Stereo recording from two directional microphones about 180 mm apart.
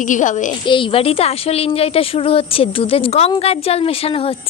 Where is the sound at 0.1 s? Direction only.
45° left (ahead or behind).